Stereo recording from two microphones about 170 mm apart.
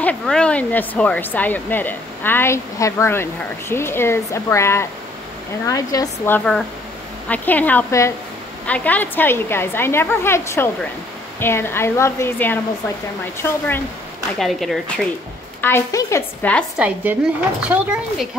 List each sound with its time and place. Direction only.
0.0 s speech: 5° left (ahead or behind)
14.4 s speech: centre (ahead or behind)
15.6 s speech: 15° left (ahead or behind)
16.7 s a woman's voice: 10° right (ahead or behind)